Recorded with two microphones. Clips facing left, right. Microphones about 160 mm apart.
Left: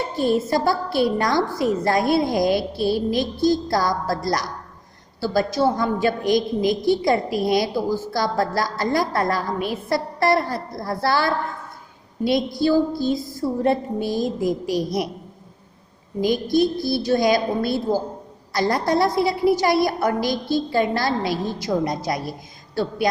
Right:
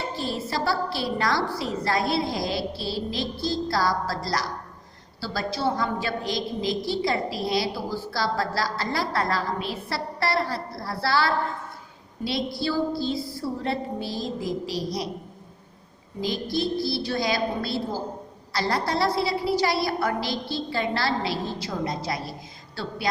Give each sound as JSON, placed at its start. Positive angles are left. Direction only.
{"t": 0.2, "sound": "a woman's voice", "side_deg": 50}
{"t": 12.5, "sound": "a woman's voice", "side_deg": 45}
{"t": 16.2, "sound": "a woman's voice", "side_deg": 50}